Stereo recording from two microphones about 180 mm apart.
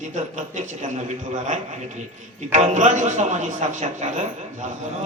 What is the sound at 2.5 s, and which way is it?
A man's voice, 40° right (ahead or behind).